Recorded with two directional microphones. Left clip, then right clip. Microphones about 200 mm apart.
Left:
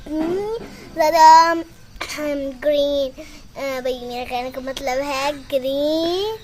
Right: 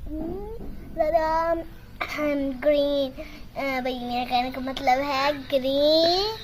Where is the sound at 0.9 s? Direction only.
20° left (ahead or behind).